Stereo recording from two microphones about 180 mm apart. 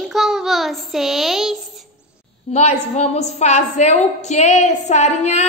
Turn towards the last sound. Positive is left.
turn(degrees=40)  # may be behind; listen again after turning